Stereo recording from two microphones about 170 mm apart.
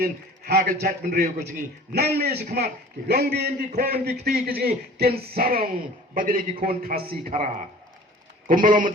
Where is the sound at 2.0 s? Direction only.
70° right (ahead or behind).